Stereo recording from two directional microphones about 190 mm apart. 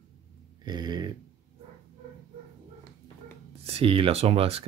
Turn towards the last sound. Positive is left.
turn(degrees=-30)  # may be behind; listen again after turning